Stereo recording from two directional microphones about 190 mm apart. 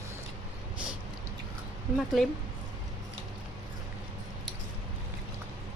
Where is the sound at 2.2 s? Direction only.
Centre (ahead or behind).